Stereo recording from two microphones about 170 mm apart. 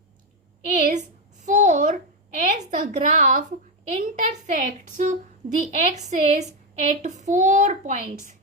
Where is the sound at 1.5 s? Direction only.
45° right (ahead or behind).